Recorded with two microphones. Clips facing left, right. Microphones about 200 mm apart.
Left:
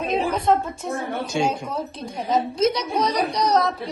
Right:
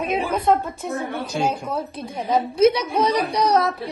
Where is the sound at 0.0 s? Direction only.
55° right (ahead or behind).